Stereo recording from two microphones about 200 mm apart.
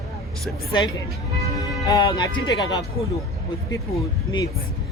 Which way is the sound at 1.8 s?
20° left (ahead or behind).